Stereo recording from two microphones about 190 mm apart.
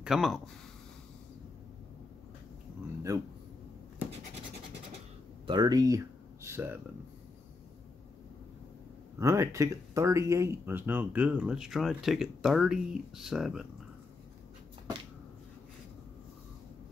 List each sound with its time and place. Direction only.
0.0 s speech: centre (ahead or behind)
3.1 s speech: 20° right (ahead or behind)
5.5 s speech: 20° right (ahead or behind)
9.2 s speech: 15° right (ahead or behind)